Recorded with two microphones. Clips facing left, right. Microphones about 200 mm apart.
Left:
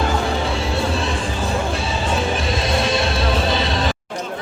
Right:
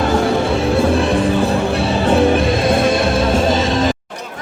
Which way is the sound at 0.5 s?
55° right (ahead or behind).